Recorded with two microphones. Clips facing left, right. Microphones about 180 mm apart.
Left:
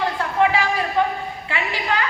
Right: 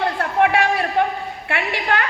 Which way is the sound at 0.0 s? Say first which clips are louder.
Right 1 dB; 60° right (ahead or behind).